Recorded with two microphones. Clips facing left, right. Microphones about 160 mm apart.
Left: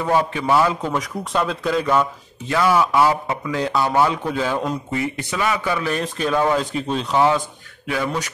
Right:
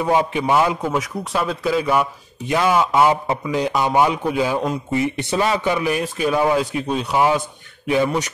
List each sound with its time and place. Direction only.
0.0 s speech: 15° right (ahead or behind)
0.8 s speech: 5° right (ahead or behind)
7.9 s speech: 20° right (ahead or behind)